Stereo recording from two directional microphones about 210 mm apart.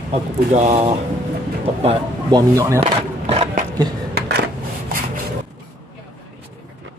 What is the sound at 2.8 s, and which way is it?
Skateboard, 30° right (ahead or behind).